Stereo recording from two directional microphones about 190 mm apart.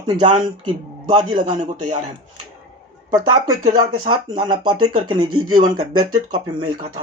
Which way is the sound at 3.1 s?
20° right (ahead or behind).